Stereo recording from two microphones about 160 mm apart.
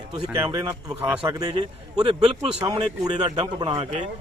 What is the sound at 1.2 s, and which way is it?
A man's voice, 30° right (ahead or behind).